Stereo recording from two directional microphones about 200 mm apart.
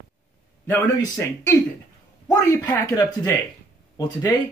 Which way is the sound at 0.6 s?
15° left (ahead or behind).